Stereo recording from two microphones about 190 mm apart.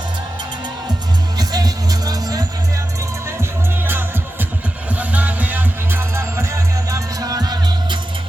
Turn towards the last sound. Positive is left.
turn(degrees=-20)  # may be behind; listen again after turning